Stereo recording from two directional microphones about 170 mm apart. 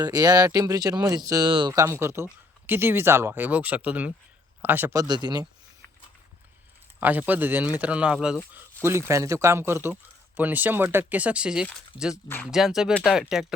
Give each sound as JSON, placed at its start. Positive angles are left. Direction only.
{"t": 0.0, "sound": "speech", "side_deg": -20}
{"t": 7.0, "sound": "speech", "side_deg": -10}